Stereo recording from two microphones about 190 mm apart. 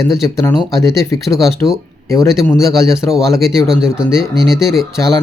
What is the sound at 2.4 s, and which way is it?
Speech, 15° left (ahead or behind).